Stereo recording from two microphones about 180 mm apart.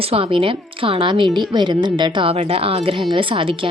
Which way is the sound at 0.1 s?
30° right (ahead or behind).